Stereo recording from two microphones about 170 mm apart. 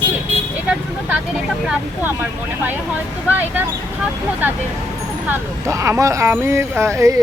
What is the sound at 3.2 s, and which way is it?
Speech, 10° right (ahead or behind).